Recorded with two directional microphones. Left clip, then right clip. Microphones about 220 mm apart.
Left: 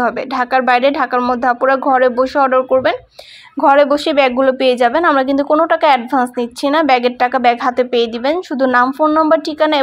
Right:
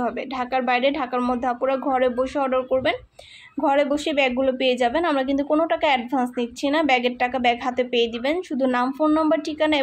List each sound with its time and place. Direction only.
0.0 s a woman's voice: 20° left (ahead or behind)